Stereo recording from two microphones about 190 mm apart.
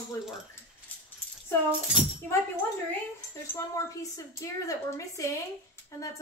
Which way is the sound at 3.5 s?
15° left (ahead or behind).